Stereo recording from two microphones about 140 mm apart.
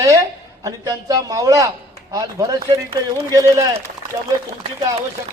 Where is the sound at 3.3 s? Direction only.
20° right (ahead or behind).